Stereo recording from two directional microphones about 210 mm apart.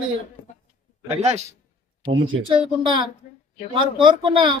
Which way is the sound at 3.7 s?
25° right (ahead or behind).